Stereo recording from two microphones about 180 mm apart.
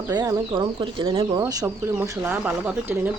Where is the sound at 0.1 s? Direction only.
20° right (ahead or behind).